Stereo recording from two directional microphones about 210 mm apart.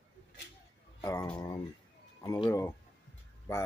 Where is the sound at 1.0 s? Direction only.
15° left (ahead or behind).